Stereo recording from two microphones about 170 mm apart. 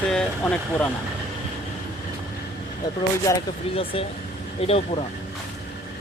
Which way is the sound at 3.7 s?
35° left (ahead or behind).